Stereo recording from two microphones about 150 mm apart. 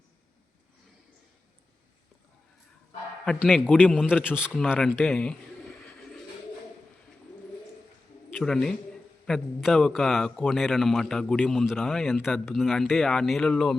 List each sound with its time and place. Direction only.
3.4 s a man's voice: centre (ahead or behind)
4.5 s speech: 5° left (ahead or behind)
8.3 s a man's voice: 5° left (ahead or behind)